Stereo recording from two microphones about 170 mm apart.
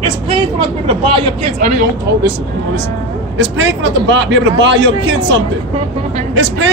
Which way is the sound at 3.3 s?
90° right.